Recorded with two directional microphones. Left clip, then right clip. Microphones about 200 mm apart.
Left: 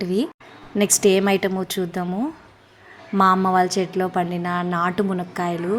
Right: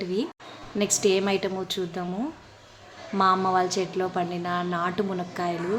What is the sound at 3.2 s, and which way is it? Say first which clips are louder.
A woman's voice: left 5 dB; 35° left (ahead or behind).